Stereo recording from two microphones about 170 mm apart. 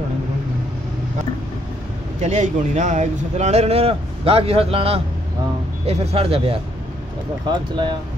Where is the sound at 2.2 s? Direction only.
45° right (ahead or behind).